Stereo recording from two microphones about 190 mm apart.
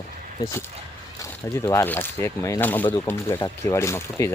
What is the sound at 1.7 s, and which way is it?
Speech, 15° left (ahead or behind).